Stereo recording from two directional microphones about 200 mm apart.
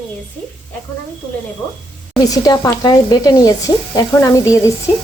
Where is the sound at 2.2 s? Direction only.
20° left (ahead or behind).